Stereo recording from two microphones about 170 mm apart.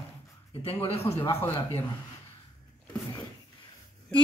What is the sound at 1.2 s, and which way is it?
Speech, 15° left (ahead or behind).